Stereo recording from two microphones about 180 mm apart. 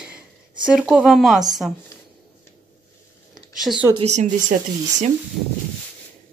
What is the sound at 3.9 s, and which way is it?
Speech, 40° right (ahead or behind).